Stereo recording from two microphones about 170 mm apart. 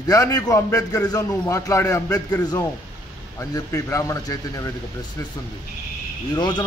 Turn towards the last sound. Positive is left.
turn(degrees=25)  # may be behind; listen again after turning